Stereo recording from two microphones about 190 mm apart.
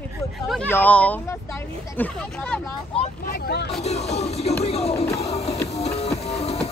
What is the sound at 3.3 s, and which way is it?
Speech, 55° left (ahead or behind).